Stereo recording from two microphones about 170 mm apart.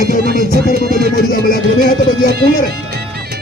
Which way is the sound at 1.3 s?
60° left (ahead or behind).